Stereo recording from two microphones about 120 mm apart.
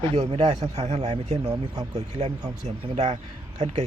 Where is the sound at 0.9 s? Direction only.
65° right (ahead or behind).